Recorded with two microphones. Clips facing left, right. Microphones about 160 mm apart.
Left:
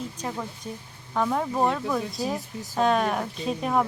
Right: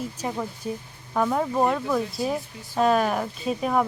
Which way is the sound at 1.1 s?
5° right (ahead or behind).